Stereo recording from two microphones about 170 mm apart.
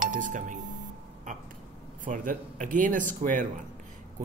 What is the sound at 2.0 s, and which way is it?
Speech, 50° right (ahead or behind).